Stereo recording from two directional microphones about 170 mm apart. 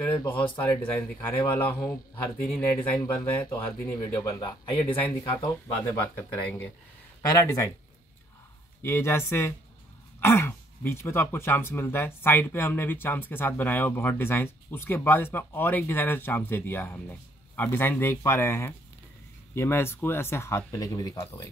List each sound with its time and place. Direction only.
0.4 s speech: 10° left (ahead or behind)
5.7 s speech: 10° left (ahead or behind)
8.8 s speech: 15° left (ahead or behind)